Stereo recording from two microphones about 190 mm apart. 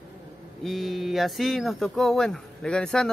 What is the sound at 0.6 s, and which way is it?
Speech, centre (ahead or behind).